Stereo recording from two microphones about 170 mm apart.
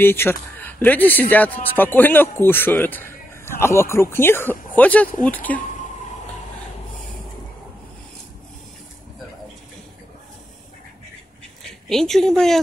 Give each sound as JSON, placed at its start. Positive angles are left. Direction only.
{"t": 0.0, "sound": "speech", "side_deg": 15}
{"t": 11.9, "sound": "speech", "side_deg": 0}